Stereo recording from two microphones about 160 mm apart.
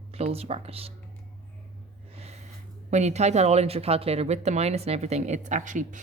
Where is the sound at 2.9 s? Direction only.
45° right (ahead or behind).